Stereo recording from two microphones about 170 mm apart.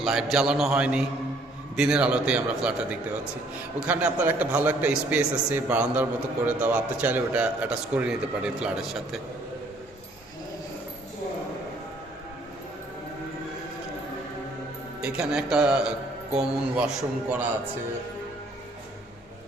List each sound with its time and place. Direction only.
0.0 s a man's voice: centre (ahead or behind)
15.0 s a man's voice: 5° right (ahead or behind)